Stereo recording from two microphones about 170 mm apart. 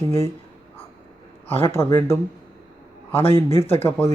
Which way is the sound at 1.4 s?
15° left (ahead or behind).